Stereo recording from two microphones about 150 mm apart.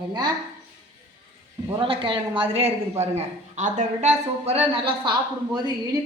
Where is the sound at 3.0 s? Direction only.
50° right (ahead or behind).